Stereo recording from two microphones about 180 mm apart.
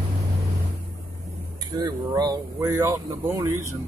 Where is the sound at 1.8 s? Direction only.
25° right (ahead or behind).